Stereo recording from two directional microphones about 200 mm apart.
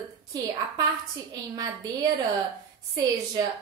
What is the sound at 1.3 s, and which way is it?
A woman's voice, 20° right (ahead or behind).